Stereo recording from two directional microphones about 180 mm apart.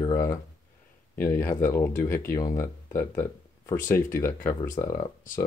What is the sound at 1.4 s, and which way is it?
Speech, 15° left (ahead or behind).